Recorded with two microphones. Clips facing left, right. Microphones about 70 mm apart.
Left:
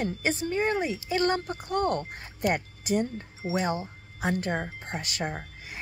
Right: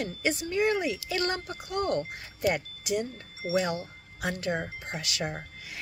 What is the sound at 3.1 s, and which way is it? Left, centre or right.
A woman's voice, left.